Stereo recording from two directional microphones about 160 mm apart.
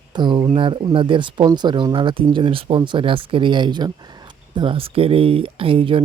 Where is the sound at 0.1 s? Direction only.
30° right (ahead or behind).